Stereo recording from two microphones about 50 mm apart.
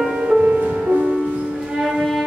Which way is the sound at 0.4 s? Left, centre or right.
Right.